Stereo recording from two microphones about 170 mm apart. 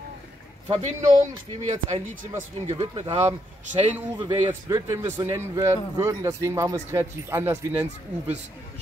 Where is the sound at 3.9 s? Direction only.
10° right (ahead or behind).